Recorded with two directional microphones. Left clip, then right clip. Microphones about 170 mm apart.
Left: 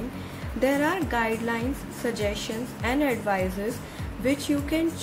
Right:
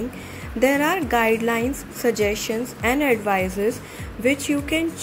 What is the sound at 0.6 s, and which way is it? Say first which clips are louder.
A woman's voice: right 5 dB; 20° right (ahead or behind).